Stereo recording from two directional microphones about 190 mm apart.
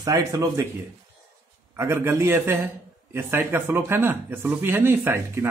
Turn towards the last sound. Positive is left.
turn(degrees=-15)  # may be behind; listen again after turning